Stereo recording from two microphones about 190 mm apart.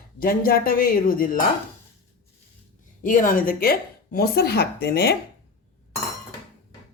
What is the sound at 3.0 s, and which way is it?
Speech, 45° left (ahead or behind).